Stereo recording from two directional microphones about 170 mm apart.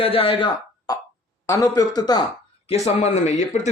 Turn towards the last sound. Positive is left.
turn(degrees=40)  # may be behind; listen again after turning